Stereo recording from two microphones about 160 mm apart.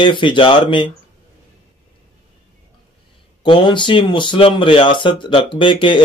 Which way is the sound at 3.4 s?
30° left (ahead or behind).